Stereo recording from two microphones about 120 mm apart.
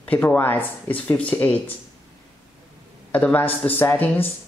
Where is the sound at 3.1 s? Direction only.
15° left (ahead or behind).